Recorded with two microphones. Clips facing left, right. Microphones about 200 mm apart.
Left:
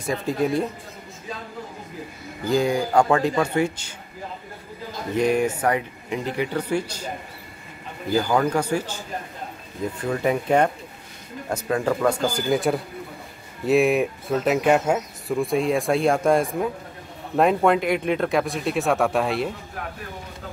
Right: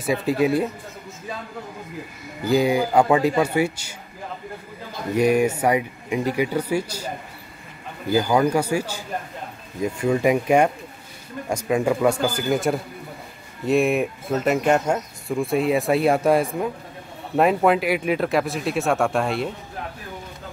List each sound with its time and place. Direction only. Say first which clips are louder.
0.0 s speech: right 3 dB; 5° right (ahead or behind)
2.4 s speech: right 2 dB; 10° right (ahead or behind)
5.1 s speech: right 2 dB; 10° right (ahead or behind)
8.1 s speech: right 2 dB; 10° right (ahead or behind)